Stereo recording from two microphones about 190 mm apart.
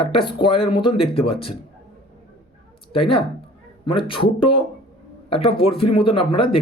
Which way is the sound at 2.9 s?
30° left (ahead or behind).